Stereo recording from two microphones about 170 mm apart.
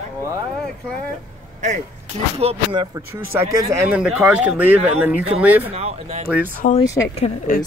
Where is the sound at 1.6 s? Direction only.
45° right (ahead or behind).